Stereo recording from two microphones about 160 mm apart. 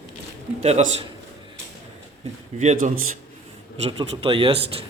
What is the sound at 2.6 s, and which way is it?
Speech, 45° right (ahead or behind).